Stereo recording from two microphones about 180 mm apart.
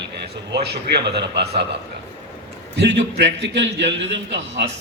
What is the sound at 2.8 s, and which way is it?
A man's voice, 85° right.